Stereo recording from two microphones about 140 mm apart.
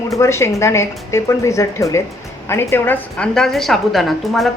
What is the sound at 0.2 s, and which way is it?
A woman's voice, 20° left (ahead or behind).